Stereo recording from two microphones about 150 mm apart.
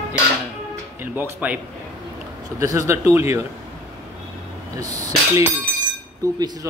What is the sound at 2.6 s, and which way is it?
Speech, 20° right (ahead or behind).